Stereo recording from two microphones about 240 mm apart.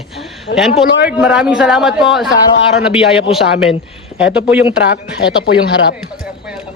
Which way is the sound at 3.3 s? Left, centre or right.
Centre.